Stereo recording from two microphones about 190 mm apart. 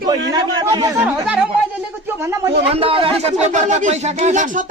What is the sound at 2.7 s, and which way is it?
Speech, 30° right (ahead or behind).